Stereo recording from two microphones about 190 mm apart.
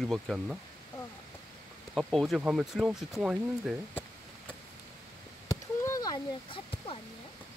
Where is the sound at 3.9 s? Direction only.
10° left (ahead or behind); by 6.9 s 30° left (ahead or behind).